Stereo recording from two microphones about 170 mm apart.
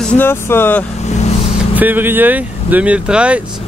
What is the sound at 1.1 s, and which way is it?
Vehicle, 40° left (ahead or behind).